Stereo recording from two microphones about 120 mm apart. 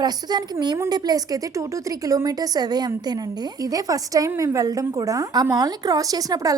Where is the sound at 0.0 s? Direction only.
35° right (ahead or behind).